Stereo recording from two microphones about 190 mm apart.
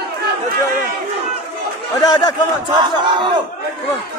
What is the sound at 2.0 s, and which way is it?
Chatter, 20° left (ahead or behind).